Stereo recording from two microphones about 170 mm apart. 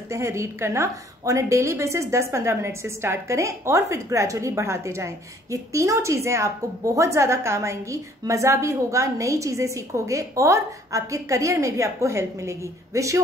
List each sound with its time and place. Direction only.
0.1 s a woman's voice: 15° right (ahead or behind)